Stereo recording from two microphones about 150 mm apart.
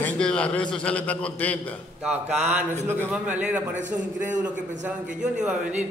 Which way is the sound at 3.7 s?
55° right (ahead or behind).